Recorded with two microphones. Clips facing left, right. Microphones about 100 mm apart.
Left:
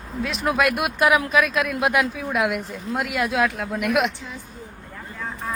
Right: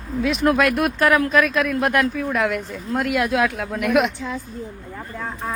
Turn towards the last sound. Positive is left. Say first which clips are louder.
# right 3 dB
turn(degrees=0)  # may be behind; listen again after turning